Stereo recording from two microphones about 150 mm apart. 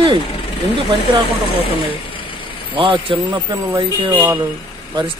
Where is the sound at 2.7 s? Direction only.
35° right (ahead or behind).